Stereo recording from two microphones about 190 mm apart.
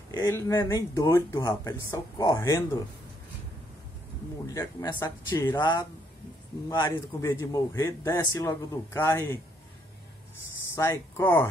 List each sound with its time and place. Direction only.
0.1 s speech: 20° left (ahead or behind)
4.5 s speech: 20° left (ahead or behind)